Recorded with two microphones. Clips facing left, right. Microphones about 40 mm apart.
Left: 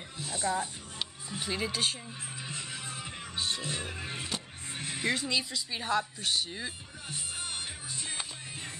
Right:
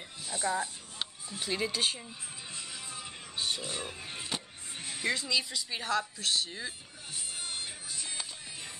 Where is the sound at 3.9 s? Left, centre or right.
Left.